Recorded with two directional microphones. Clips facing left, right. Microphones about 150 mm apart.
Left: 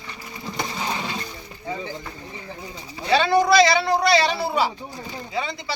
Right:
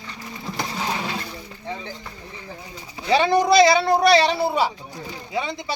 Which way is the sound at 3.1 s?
15° right (ahead or behind).